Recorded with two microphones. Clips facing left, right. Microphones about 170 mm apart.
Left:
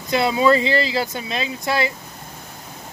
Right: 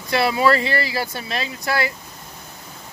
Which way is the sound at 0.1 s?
20° left (ahead or behind).